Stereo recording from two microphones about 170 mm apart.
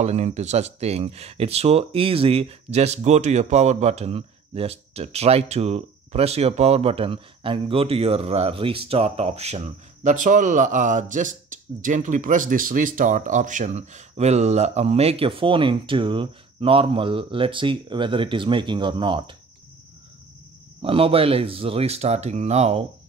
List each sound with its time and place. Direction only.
0.0 s speech: 40° right (ahead or behind)
20.8 s speech: 35° right (ahead or behind)